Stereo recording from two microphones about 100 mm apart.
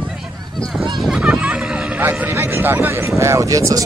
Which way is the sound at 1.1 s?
10° right (ahead or behind).